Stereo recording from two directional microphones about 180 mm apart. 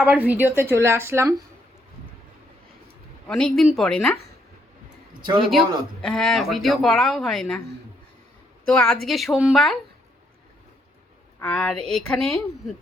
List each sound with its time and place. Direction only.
0.0 s a woman's voice: 10° right (ahead or behind)
3.2 s speech: 5° left (ahead or behind)
5.2 s a man's voice: 25° right (ahead or behind)
6.0 s speech: 5° left (ahead or behind)
8.6 s speech: 5° left (ahead or behind)
11.3 s speech: 5° left (ahead or behind)